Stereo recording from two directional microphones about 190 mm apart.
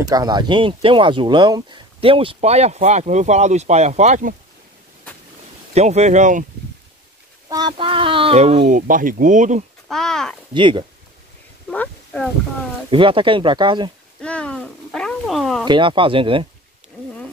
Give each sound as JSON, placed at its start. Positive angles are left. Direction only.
{"t": 0.0, "sound": "speech", "side_deg": -20}
{"t": 5.8, "sound": "speech", "side_deg": -35}
{"t": 7.4, "sound": "speech", "side_deg": -20}
{"t": 9.8, "sound": "speech", "side_deg": 0}
{"t": 10.5, "sound": "speech", "side_deg": -25}
{"t": 11.7, "sound": "speech", "side_deg": 5}
{"t": 12.9, "sound": "speech", "side_deg": -25}
{"t": 14.2, "sound": "speech", "side_deg": 5}
{"t": 15.6, "sound": "speech", "side_deg": -25}